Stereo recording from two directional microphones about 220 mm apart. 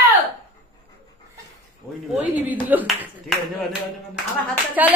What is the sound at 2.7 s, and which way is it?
Speech, 10° right (ahead or behind).